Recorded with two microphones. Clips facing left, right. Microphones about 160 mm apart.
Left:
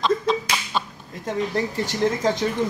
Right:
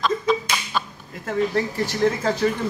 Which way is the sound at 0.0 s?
25° left (ahead or behind).